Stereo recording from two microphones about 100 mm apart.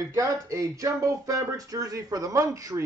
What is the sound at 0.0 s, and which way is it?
Speech, 35° right (ahead or behind).